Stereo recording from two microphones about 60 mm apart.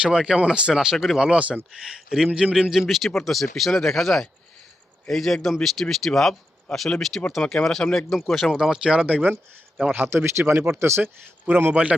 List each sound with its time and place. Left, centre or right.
0.0 s speech: centre
1.2 s speech: centre
8.4 s speech: centre
10.1 s speech: right
10.8 s speech: right
11.0 s speech: right
11.7 s speech: right